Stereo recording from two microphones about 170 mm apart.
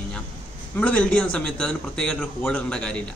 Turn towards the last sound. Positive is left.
turn(degrees=5)  # may be behind; listen again after turning